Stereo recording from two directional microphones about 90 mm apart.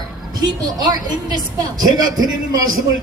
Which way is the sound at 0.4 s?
50° right (ahead or behind).